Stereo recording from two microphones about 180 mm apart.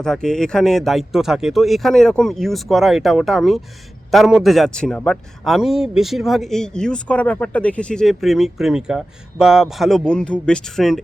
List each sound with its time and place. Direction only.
0.0 s a man's voice: 5° left (ahead or behind)